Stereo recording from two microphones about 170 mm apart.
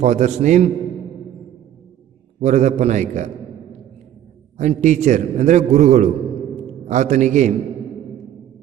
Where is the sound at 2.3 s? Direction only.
45° right (ahead or behind).